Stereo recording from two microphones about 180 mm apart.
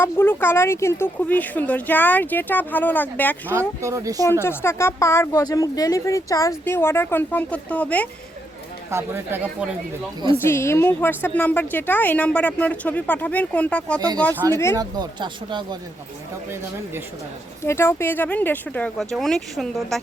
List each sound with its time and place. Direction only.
0.0 s a woman's voice: 10° left (ahead or behind)
3.5 s speech: 15° right (ahead or behind)
4.3 s a woman's voice: 15° left (ahead or behind)
8.9 s speech: 15° right (ahead or behind)
10.3 s a woman's voice: 15° left (ahead or behind)
14.8 s speech: 25° right (ahead or behind)
17.6 s a woman's voice: 15° left (ahead or behind)